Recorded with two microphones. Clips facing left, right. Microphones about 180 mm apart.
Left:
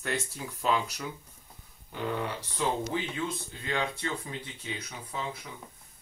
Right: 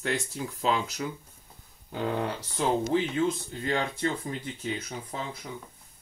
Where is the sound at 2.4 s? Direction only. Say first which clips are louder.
Right 4 dB; 40° right (ahead or behind).